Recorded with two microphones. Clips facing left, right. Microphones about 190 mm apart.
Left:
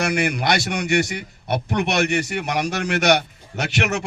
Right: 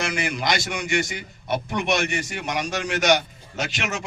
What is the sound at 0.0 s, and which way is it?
A man's voice, 60° left (ahead or behind).